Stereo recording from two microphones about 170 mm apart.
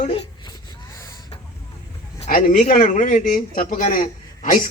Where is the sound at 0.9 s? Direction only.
20° left (ahead or behind).